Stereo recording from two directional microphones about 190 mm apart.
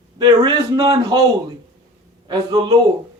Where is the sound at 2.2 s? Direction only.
20° right (ahead or behind).